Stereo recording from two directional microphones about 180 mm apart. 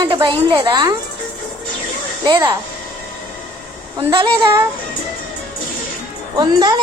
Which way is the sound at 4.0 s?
30° right (ahead or behind).